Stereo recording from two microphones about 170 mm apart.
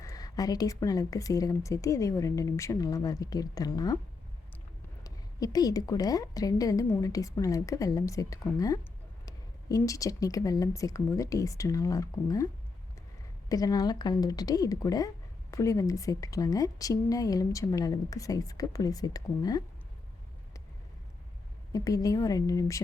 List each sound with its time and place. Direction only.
0.0 s a woman's voice: 20° left (ahead or behind)
5.0 s a woman's voice: 20° left (ahead or behind)
13.5 s a woman's voice: 20° left (ahead or behind)
21.7 s a woman's voice: 20° left (ahead or behind)